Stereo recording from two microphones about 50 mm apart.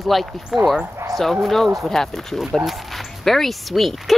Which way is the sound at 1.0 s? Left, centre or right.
Right.